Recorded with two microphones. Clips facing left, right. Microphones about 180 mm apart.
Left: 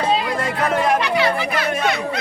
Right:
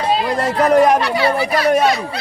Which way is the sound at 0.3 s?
40° right (ahead or behind).